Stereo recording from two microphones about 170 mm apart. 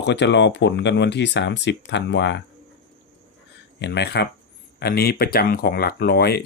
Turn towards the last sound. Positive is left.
turn(degrees=70)  # may be behind; listen again after turning